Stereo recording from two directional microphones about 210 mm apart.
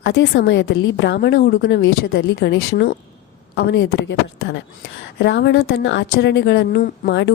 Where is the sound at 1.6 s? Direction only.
60° left (ahead or behind).